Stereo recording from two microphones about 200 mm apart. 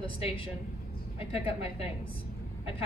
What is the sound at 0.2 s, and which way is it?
A woman's voice, 25° left (ahead or behind).